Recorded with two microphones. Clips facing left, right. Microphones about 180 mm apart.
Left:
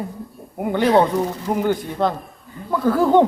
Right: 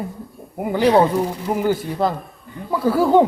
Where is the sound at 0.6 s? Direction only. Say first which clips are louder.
Right 1 dB; centre (ahead or behind).